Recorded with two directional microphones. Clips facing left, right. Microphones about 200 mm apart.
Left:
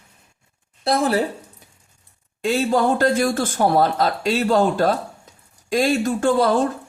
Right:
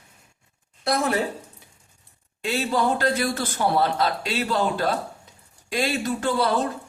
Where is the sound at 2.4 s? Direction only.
45° left (ahead or behind).